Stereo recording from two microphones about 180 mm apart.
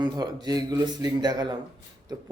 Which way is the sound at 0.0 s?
20° right (ahead or behind).